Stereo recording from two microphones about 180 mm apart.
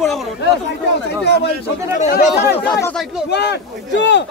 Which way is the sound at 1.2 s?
65° left (ahead or behind).